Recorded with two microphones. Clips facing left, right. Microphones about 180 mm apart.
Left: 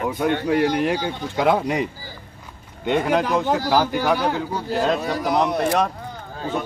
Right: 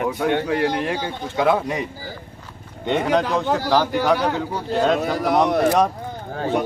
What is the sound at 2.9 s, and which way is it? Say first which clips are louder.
A man's voice: even; 10° left (ahead or behind).